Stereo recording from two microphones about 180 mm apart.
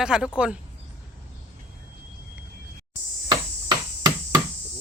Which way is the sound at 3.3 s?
20° right (ahead or behind).